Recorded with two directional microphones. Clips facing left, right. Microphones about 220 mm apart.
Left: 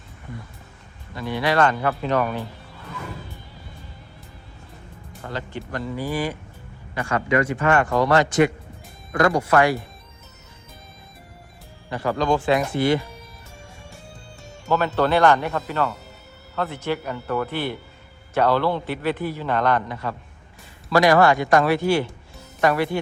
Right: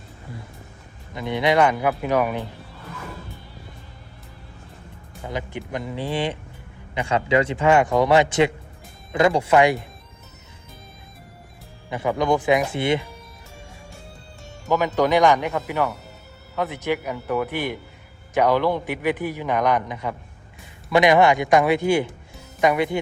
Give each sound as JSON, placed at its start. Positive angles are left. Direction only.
{"t": 1.1, "sound": "a man's voice", "side_deg": -20}
{"t": 5.2, "sound": "a man's voice", "side_deg": -15}
{"t": 11.9, "sound": "speech", "side_deg": -20}
{"t": 14.9, "sound": "a man's voice", "side_deg": -15}